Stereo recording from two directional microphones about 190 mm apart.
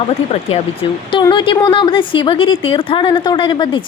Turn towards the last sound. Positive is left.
turn(degrees=25)  # may be behind; listen again after turning